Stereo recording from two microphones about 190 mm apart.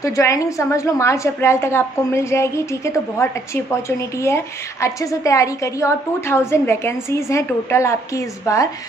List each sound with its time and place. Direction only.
0.0 s a woman's voice: 15° left (ahead or behind)